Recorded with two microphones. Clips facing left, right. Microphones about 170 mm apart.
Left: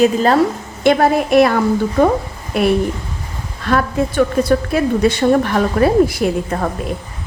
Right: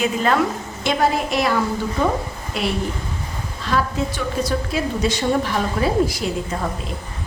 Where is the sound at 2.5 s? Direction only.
55° left (ahead or behind).